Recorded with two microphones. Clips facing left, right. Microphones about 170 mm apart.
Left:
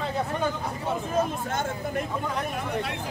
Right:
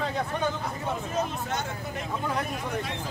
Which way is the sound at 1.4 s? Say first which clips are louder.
Left 3 dB; 50° left (ahead or behind).